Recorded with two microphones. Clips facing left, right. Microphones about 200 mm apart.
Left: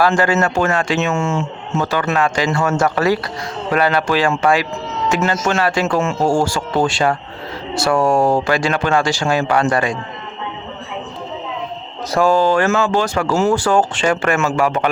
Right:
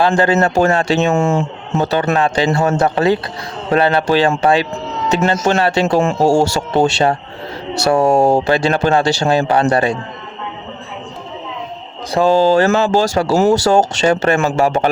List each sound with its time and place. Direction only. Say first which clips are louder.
0.0 s speech: right 2 dB; 25° right (ahead or behind)
12.1 s speech: right 3 dB; 25° right (ahead or behind)